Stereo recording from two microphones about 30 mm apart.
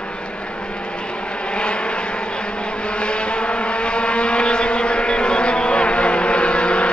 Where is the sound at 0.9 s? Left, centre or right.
Left.